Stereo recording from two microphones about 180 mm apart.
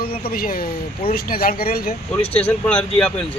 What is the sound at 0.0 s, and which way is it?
Speech, 55° left (ahead or behind).